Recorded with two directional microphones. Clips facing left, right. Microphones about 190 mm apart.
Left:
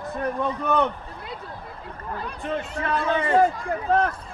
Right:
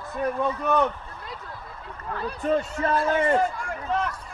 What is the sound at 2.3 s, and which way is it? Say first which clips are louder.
Speech: right 6 dB; 40° right (ahead or behind).